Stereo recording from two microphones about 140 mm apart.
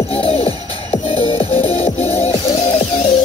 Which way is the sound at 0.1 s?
40° left (ahead or behind).